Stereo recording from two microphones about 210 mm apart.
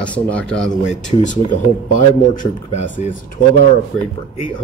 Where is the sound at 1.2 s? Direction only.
35° left (ahead or behind).